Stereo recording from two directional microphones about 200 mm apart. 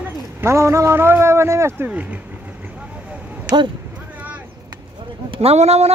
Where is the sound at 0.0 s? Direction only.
10° right (ahead or behind).